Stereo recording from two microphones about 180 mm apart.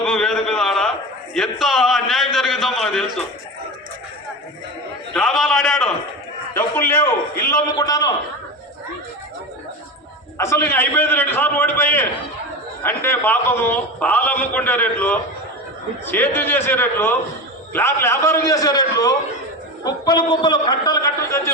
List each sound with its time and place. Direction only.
0.0 s a sound: 5° left (ahead or behind)
1.3 s a man's voice: centre (ahead or behind)
5.1 s a man's voice: centre (ahead or behind)
6.5 s a sound: 10° left (ahead or behind)
7.5 s a man's voice: 20° left (ahead or behind)
10.3 s a man's voice: 15° left (ahead or behind)